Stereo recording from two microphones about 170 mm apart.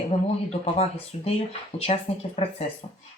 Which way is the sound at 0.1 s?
40° left (ahead or behind).